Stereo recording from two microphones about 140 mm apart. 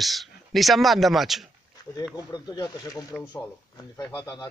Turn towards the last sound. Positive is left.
turn(degrees=30)  # may be behind; listen again after turning